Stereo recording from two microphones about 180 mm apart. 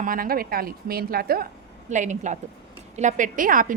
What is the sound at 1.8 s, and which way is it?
A woman's voice, 45° right (ahead or behind).